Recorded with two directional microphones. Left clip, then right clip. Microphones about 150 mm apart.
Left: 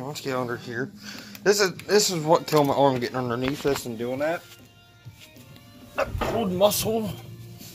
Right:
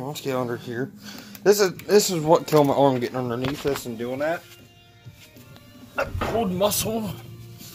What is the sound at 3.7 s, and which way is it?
Speech, 20° left (ahead or behind).